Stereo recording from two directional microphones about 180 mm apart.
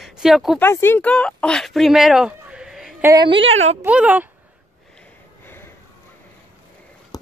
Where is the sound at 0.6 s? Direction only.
10° left (ahead or behind); by 4.2 s 10° right (ahead or behind).